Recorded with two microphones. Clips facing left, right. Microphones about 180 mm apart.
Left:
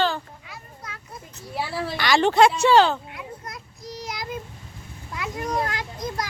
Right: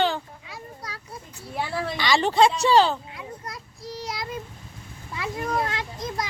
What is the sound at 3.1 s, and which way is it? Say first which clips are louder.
Child singing: even; 30° right (ahead or behind).